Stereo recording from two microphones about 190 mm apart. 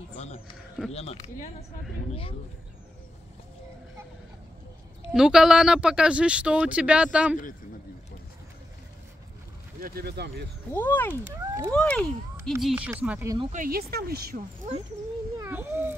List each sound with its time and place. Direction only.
0.1 s speech: 35° left (ahead or behind)
5.1 s speech: 5° right (ahead or behind)
9.8 s speech: 50° right (ahead or behind)
10.7 s speech: 10° left (ahead or behind)
11.3 s speech: 15° right (ahead or behind)
11.7 s speech: 5° left (ahead or behind); by 13.3 s 10° right (ahead or behind)
13.5 s speech: 50° right (ahead or behind)
15.3 s a sound: 15° right (ahead or behind)